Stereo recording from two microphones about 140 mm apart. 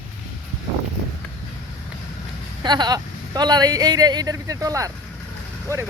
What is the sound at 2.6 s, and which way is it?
Speech, 30° right (ahead or behind).